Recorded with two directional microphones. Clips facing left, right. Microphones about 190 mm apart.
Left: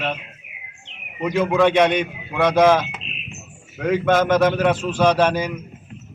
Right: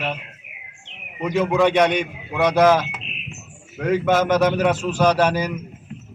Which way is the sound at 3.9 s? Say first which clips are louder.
Left 1 dB; 10° right (ahead or behind).